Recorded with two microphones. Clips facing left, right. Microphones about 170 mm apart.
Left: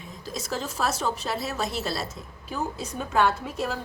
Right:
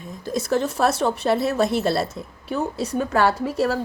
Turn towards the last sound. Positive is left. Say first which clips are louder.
# right 6 dB
turn(degrees=-70)  # may be behind; listen again after turning